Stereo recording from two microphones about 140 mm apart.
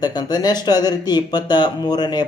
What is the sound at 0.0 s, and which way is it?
Speech, 30° left (ahead or behind).